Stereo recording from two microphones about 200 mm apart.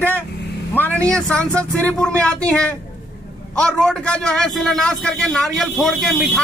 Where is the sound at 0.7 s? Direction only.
10° left (ahead or behind).